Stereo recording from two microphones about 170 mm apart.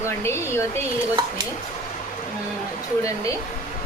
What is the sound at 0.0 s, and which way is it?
Speech, 15° left (ahead or behind).